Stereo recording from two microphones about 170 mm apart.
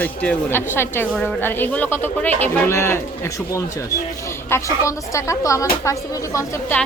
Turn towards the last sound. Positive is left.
turn(degrees=20)  # may be behind; listen again after turning